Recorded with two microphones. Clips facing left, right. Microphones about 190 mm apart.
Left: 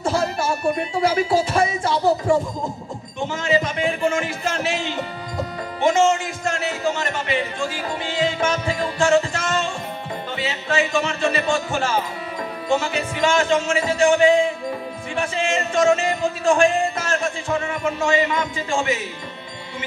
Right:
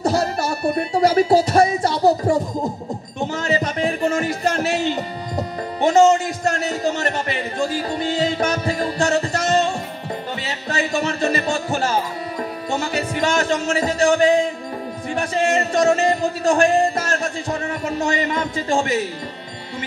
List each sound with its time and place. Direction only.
0.0 s a man's voice: 40° right (ahead or behind)